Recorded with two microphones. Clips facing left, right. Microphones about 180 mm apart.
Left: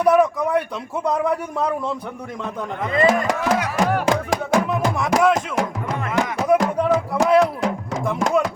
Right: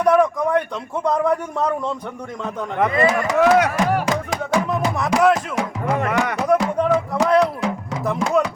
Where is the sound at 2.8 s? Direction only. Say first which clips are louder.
Right 8 dB; 75° right (ahead or behind).